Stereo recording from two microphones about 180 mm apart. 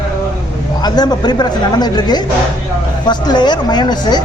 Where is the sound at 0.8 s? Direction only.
25° left (ahead or behind).